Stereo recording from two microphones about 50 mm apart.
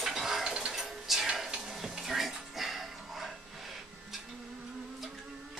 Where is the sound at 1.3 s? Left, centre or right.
Centre.